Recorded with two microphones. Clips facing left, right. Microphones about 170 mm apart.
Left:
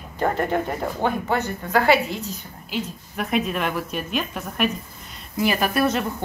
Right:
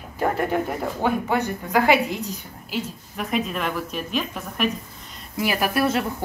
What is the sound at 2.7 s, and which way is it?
A woman's voice, centre (ahead or behind).